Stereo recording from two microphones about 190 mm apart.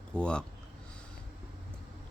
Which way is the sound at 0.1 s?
5° left (ahead or behind).